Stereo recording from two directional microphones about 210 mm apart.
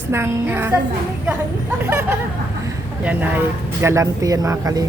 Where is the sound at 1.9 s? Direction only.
10° right (ahead or behind).